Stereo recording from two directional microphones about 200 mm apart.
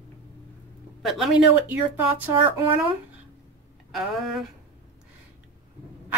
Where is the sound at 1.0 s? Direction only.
Centre (ahead or behind).